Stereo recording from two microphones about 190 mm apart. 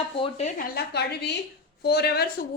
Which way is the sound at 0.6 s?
55° left (ahead or behind).